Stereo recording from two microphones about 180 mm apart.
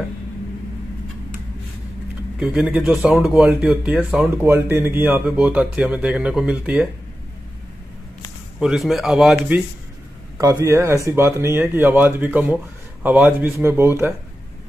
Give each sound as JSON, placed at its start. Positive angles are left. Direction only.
{"t": 2.3, "sound": "speech", "side_deg": -5}
{"t": 8.5, "sound": "speech", "side_deg": 0}
{"t": 10.3, "sound": "speech", "side_deg": -20}